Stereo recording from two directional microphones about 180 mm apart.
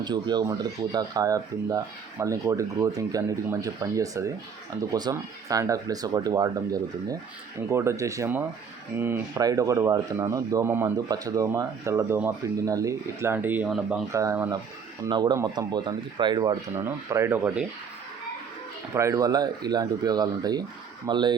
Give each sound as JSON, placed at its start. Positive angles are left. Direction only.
{"t": 0.0, "sound": "speech", "side_deg": -25}
{"t": 14.1, "sound": "speech", "side_deg": -15}
{"t": 18.9, "sound": "speech", "side_deg": -15}